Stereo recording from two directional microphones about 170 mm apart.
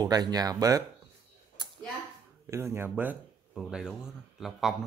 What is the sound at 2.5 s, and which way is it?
Speech, 15° right (ahead or behind).